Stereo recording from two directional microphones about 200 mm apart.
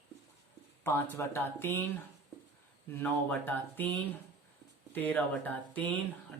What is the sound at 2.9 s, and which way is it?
Speech, 10° left (ahead or behind).